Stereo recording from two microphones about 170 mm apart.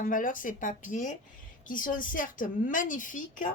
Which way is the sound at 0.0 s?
50° left (ahead or behind).